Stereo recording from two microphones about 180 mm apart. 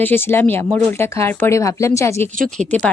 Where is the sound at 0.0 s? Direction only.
10° left (ahead or behind).